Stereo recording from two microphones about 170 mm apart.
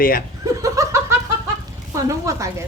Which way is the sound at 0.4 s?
20° right (ahead or behind).